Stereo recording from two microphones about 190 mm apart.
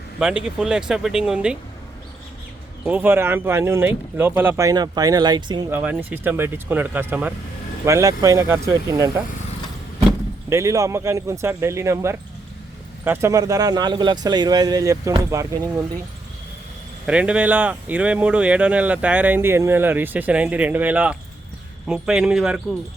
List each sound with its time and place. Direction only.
0.2 s speech: 5° right (ahead or behind)
2.8 s speech: 10° right (ahead or behind)
5.8 s speech: 10° right (ahead or behind)
17.1 s speech: 5° right (ahead or behind)